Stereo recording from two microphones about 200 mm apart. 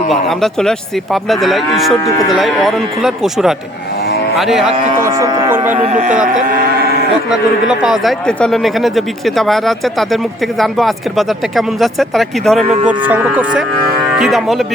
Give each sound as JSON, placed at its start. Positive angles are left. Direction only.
{"t": 0.1, "sound": "speech", "side_deg": 0}
{"t": 2.0, "sound": "speech", "side_deg": 20}
{"t": 2.4, "sound": "speech", "side_deg": 0}
{"t": 5.0, "sound": "speech", "side_deg": -20}
{"t": 5.7, "sound": "speech", "side_deg": -35}
{"t": 7.3, "sound": "speech", "side_deg": -5}